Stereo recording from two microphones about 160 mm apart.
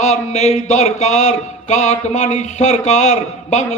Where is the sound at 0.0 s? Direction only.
45° left (ahead or behind).